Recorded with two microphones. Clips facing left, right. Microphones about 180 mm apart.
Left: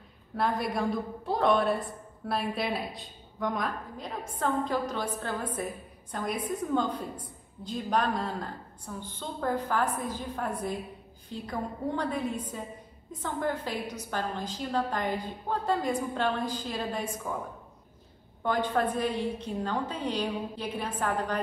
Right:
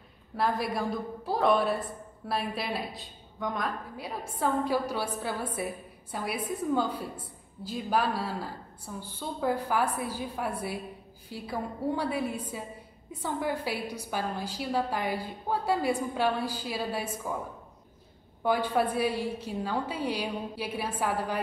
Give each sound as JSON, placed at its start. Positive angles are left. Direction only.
{"t": 0.4, "sound": "a woman's voice", "side_deg": 0}
{"t": 18.4, "sound": "a woman's voice", "side_deg": -10}